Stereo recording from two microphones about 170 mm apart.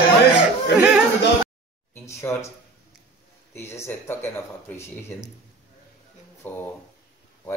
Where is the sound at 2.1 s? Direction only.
15° left (ahead or behind).